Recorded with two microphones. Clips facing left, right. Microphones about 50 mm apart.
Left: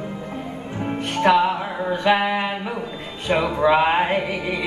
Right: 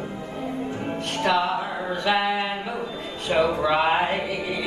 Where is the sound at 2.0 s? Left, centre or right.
Left.